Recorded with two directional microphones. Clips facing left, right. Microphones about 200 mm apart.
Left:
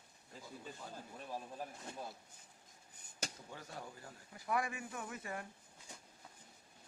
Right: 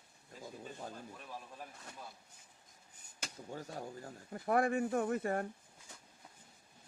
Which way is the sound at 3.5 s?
40° right (ahead or behind).